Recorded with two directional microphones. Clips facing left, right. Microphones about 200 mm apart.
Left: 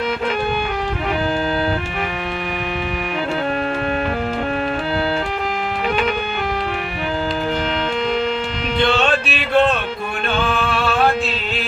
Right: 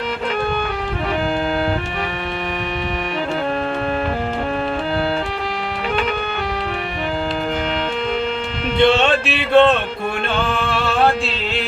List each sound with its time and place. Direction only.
8.8 s music: 25° right (ahead or behind)